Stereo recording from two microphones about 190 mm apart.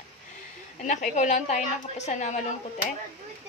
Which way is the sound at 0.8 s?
40° left (ahead or behind).